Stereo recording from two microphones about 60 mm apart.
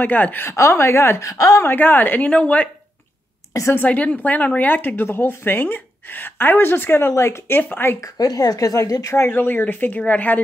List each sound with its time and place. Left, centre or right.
0.0 s speech: left
0.5 s a woman's voice: left
1.2 s a woman's voice: left
1.6 s a woman's voice: left
3.7 s speech: left
8.0 s a woman's voice: left
9.3 s a woman's voice: left